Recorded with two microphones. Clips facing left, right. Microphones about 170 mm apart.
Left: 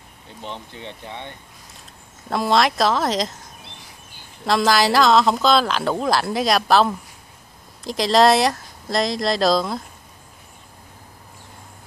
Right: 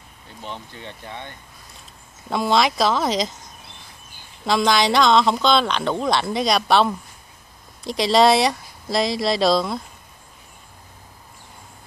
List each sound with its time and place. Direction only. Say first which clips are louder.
0.4 s speech: left 1 dB; 20° left (ahead or behind)
2.2 s speech: left 1 dB; centre (ahead or behind)
4.5 s speech: left 1 dB; centre (ahead or behind)